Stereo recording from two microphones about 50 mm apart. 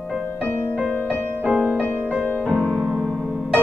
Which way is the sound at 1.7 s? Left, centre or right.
Left.